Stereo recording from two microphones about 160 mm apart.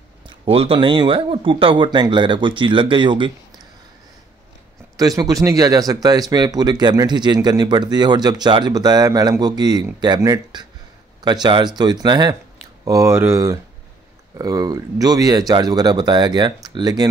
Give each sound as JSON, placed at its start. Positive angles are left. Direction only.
{"t": 0.5, "sound": "speech", "side_deg": -35}
{"t": 4.9, "sound": "speech", "side_deg": -20}